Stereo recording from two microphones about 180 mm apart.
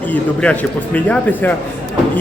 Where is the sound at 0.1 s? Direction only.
5° left (ahead or behind).